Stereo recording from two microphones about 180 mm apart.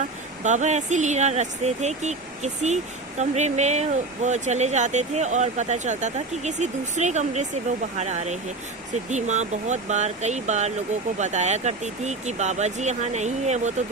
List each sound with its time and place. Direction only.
0.4 s speech: 40° right (ahead or behind)